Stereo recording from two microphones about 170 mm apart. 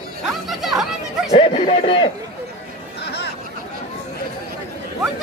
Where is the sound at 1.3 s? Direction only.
40° left (ahead or behind).